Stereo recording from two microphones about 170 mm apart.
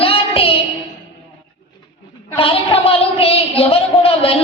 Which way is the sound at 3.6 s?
35° left (ahead or behind).